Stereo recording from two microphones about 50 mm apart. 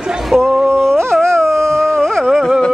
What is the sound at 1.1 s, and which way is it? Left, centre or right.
Dog, centre.